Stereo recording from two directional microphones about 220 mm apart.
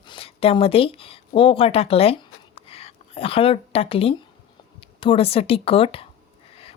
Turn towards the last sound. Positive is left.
turn(degrees=25)  # may be behind; listen again after turning